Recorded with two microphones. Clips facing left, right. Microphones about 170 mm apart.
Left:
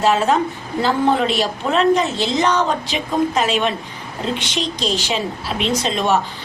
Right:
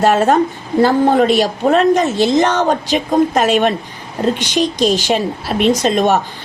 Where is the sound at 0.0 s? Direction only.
50° right (ahead or behind).